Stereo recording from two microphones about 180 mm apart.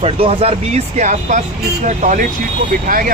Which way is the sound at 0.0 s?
30° right (ahead or behind).